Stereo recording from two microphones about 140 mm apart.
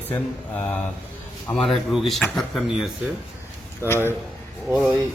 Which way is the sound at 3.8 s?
20° left (ahead or behind).